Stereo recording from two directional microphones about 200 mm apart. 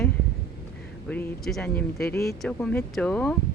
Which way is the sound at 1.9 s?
50° left (ahead or behind).